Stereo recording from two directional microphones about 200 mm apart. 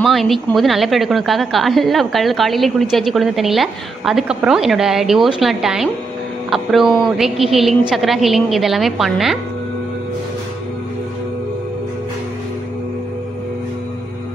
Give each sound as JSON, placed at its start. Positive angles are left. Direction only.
{"t": 0.0, "sound": "a woman's voice", "side_deg": 0}